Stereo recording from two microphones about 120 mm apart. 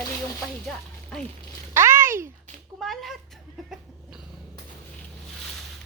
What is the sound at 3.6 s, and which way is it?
Cough, 5° right (ahead or behind).